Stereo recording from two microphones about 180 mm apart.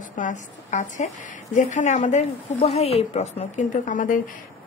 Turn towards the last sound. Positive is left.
turn(degrees=45)  # may be behind; listen again after turning